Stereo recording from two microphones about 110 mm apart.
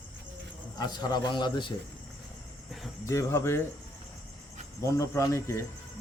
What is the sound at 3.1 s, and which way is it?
Speech, 25° left (ahead or behind).